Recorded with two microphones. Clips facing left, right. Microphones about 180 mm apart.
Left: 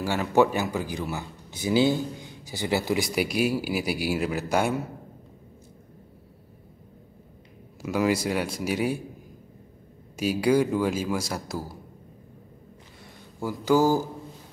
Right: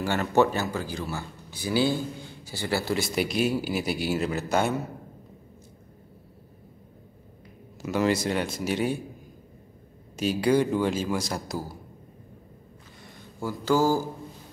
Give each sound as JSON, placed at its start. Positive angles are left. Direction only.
{"t": 0.0, "sound": "speech", "side_deg": 5}
{"t": 7.8, "sound": "speech", "side_deg": 10}
{"t": 10.1, "sound": "speech", "side_deg": 10}
{"t": 13.4, "sound": "speech", "side_deg": 15}